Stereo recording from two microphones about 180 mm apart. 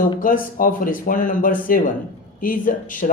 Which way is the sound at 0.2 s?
50° left (ahead or behind).